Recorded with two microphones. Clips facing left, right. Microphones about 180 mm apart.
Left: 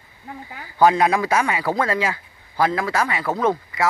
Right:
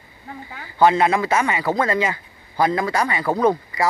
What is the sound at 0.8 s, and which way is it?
A man's voice, 10° left (ahead or behind).